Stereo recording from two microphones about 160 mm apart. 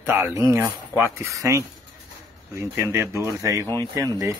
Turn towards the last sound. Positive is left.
turn(degrees=-20)  # may be behind; listen again after turning